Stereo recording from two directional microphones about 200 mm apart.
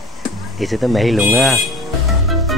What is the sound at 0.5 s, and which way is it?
Music, centre (ahead or behind).